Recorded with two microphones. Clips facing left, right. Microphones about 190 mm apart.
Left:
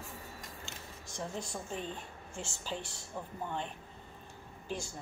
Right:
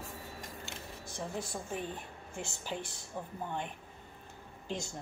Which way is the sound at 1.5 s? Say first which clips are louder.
Right 1 dB; 15° right (ahead or behind).